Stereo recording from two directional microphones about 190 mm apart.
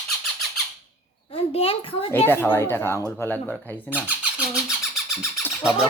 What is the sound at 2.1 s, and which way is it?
Speech, 10° left (ahead or behind).